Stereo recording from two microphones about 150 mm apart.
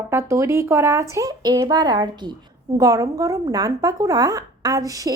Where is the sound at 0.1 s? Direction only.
15° right (ahead or behind).